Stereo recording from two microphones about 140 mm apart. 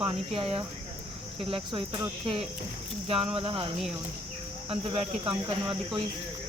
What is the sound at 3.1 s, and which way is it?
Speech, 45° right (ahead or behind).